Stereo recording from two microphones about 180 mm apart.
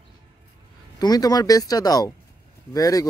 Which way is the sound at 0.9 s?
20° left (ahead or behind).